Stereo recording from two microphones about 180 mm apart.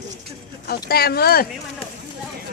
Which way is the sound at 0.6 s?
60° left (ahead or behind).